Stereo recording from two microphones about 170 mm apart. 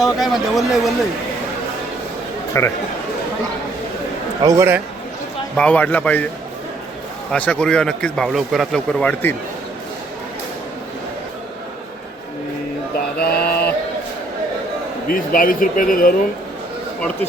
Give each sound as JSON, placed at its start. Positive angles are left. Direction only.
{"t": 0.0, "sound": "speech", "side_deg": 0}
{"t": 2.5, "sound": "speech", "side_deg": 15}
{"t": 4.4, "sound": "a man's voice", "side_deg": -15}
{"t": 5.5, "sound": "speech", "side_deg": 10}
{"t": 7.3, "sound": "speech", "side_deg": 10}
{"t": 13.1, "sound": "mantra", "side_deg": 65}
{"t": 15.1, "sound": "speech", "side_deg": 55}